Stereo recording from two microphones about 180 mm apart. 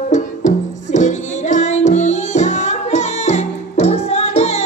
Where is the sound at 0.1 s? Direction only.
40° left (ahead or behind).